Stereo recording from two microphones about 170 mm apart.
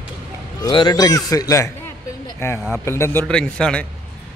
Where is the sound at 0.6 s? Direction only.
25° left (ahead or behind).